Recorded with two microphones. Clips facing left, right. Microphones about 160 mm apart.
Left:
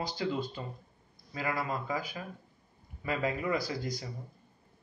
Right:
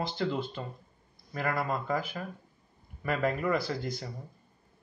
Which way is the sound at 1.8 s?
10° left (ahead or behind).